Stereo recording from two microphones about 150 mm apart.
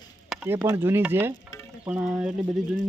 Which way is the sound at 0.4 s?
15° right (ahead or behind).